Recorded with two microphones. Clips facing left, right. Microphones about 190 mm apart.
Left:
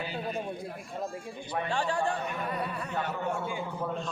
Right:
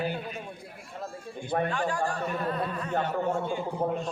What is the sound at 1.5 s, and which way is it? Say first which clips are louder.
Speech: right 6 dB; 55° right (ahead or behind).